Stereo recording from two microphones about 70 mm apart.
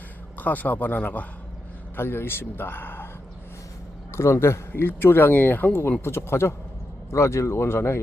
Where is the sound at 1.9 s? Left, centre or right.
Left.